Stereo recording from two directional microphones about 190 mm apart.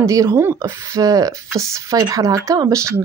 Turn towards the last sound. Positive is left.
turn(degrees=-15)  # may be behind; listen again after turning